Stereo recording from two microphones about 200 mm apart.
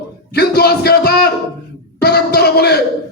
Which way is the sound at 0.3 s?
50° left (ahead or behind).